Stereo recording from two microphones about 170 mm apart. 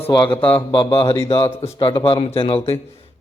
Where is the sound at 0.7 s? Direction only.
30° left (ahead or behind).